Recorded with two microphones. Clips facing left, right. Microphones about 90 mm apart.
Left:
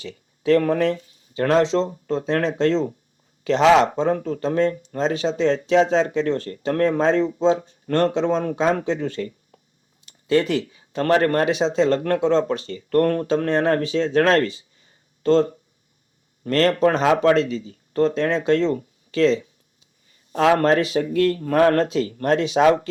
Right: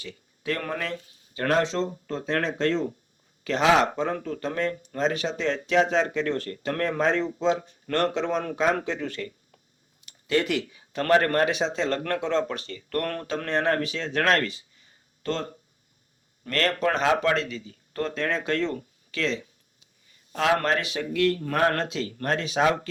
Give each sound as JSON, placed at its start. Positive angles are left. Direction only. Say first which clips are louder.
{"t": 0.0, "sound": "speech", "louder": "left 9 dB", "side_deg": 30}